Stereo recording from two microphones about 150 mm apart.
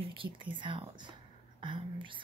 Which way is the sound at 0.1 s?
35° right (ahead or behind).